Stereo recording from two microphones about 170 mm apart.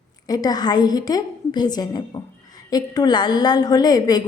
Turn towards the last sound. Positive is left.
turn(degrees=25)  # may be behind; listen again after turning